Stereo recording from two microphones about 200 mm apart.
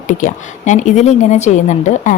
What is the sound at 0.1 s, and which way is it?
A woman's voice, 40° left (ahead or behind).